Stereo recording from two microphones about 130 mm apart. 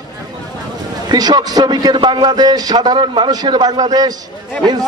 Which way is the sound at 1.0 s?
30° right (ahead or behind).